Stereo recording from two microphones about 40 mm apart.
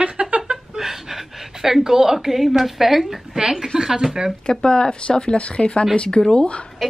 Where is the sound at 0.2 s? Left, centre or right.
Right.